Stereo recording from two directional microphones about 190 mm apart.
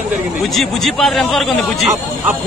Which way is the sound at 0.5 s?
Centre (ahead or behind).